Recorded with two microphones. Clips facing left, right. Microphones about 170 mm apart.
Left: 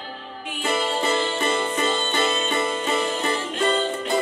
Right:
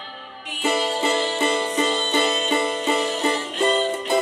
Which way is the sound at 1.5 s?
20° right (ahead or behind).